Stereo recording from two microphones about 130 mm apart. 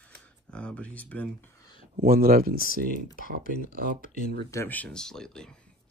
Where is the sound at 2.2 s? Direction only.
90° right.